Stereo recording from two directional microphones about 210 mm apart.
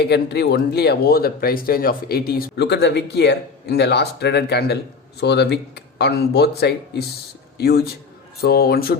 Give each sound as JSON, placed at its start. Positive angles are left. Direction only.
{"t": 0.0, "sound": "speech", "side_deg": 50}